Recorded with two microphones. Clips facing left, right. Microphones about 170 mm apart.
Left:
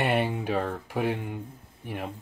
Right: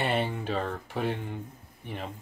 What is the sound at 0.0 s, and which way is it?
Speech, 10° left (ahead or behind).